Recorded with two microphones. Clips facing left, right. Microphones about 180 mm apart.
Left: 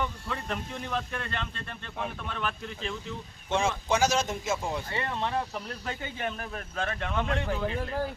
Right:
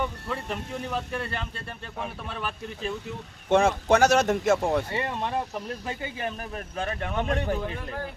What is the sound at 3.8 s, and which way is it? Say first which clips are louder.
A man's voice: right 6 dB; 60° right (ahead or behind).